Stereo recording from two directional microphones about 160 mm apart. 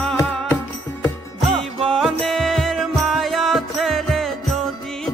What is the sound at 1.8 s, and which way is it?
Music, 5° left (ahead or behind).